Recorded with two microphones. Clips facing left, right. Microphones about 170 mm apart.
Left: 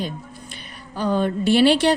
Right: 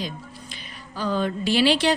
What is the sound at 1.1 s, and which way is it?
Speech, 50° left (ahead or behind).